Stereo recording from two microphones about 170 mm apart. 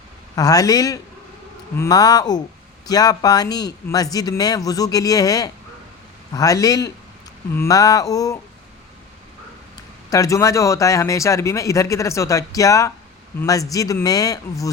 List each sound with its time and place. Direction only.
0.3 s speech: 20° left (ahead or behind)
10.1 s speech: 20° left (ahead or behind)